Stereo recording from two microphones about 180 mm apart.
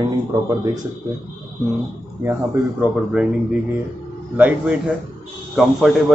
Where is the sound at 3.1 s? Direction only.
5° right (ahead or behind).